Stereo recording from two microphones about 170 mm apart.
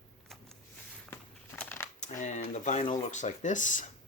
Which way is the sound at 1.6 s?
10° left (ahead or behind).